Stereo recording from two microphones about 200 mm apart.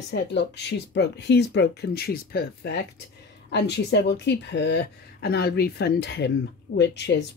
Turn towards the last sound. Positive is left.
turn(degrees=55)  # may be behind; listen again after turning